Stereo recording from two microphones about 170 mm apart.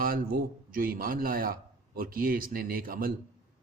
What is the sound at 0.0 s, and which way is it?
Speech, 55° right (ahead or behind).